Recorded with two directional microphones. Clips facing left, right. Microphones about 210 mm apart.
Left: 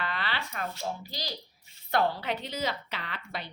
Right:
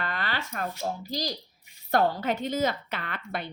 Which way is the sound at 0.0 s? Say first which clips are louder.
Right 2 dB; 45° right (ahead or behind).